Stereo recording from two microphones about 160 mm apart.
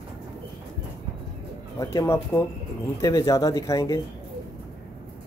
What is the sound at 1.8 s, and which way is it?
Speech, 20° left (ahead or behind).